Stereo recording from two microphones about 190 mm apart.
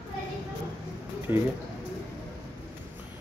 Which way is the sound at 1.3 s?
10° right (ahead or behind).